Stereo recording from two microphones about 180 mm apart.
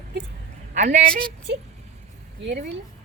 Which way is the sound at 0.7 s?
40° right (ahead or behind).